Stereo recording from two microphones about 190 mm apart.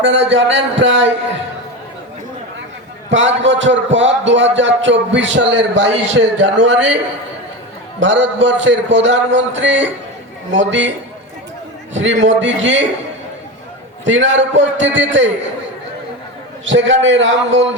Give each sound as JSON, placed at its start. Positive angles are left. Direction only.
{"t": 0.0, "sound": "a man's voice", "side_deg": -70}
{"t": 3.1, "sound": "a man's voice", "side_deg": -75}
{"t": 7.9, "sound": "a man's voice", "side_deg": -70}
{"t": 11.9, "sound": "a man's voice", "side_deg": -80}
{"t": 14.0, "sound": "a man's voice", "side_deg": -80}
{"t": 16.6, "sound": "a man's voice", "side_deg": -75}